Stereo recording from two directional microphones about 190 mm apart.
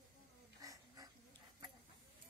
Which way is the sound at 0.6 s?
20° right (ahead or behind).